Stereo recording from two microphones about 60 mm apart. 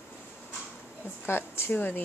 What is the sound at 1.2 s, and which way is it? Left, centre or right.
Speech, left.